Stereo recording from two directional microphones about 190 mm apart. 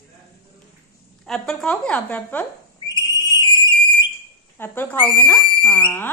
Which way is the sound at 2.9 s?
20° left (ahead or behind).